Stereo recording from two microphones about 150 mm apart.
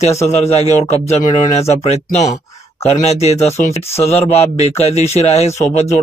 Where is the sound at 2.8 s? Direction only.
45° left (ahead or behind).